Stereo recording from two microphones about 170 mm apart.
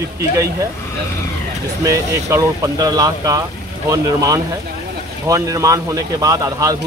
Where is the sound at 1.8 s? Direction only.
20° right (ahead or behind).